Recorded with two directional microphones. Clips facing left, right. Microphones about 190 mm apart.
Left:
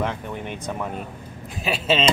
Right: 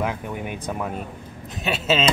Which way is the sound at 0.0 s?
5° right (ahead or behind).